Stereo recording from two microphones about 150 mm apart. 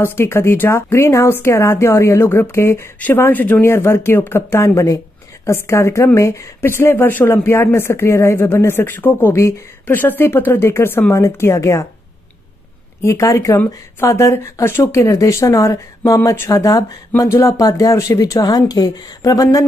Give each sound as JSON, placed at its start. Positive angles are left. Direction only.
{"t": 0.0, "sound": "speech", "side_deg": 15}
{"t": 13.0, "sound": "speech", "side_deg": 20}